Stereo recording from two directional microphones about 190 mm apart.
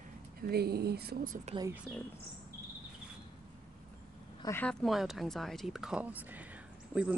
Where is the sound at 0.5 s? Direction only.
55° right (ahead or behind).